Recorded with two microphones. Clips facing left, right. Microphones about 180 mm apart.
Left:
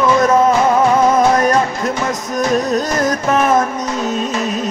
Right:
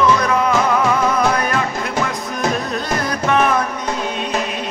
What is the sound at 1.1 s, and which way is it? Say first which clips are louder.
Music: left 5 dB; 45° left (ahead or behind).